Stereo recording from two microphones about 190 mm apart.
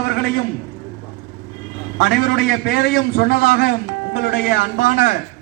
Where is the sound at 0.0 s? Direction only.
60° left (ahead or behind).